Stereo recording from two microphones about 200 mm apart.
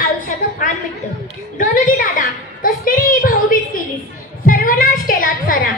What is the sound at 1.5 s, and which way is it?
A woman's voice, 45° left (ahead or behind).